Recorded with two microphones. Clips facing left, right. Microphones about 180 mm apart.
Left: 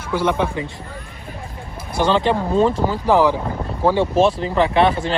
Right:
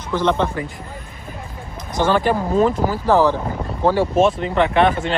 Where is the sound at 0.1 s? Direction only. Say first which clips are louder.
Right 1 dB; 10° left (ahead or behind).